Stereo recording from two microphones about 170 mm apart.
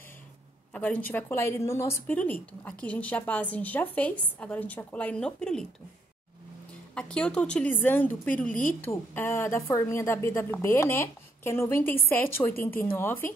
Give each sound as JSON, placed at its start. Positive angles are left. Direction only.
{"t": 0.7, "sound": "a woman's voice", "side_deg": 10}
{"t": 7.0, "sound": "a woman's voice", "side_deg": 5}